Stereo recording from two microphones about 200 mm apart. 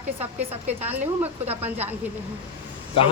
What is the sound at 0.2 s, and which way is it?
A woman's voice, 10° right (ahead or behind).